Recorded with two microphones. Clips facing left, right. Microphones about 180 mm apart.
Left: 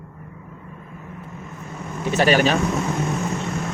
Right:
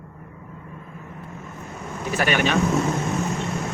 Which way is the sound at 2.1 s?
30° left (ahead or behind).